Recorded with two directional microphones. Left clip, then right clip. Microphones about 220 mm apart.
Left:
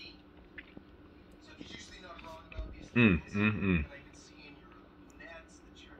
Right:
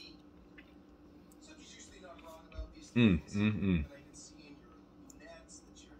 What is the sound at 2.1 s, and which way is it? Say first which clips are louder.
Music: left 5 dB; 5° right (ahead or behind).